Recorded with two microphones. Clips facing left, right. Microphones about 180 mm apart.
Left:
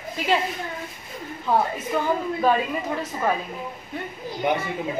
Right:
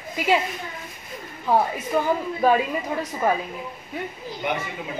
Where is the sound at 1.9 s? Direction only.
10° right (ahead or behind).